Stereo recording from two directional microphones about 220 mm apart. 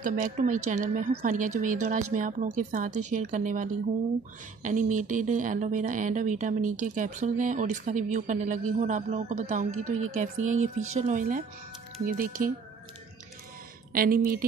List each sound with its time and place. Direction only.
0.0 s speech: 35° right (ahead or behind)
13.9 s speech: 40° right (ahead or behind)